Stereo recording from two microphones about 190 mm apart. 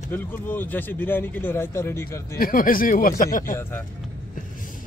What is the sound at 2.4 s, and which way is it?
Speech, 50° left (ahead or behind).